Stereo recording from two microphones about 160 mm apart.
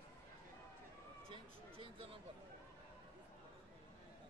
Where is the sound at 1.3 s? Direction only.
35° right (ahead or behind).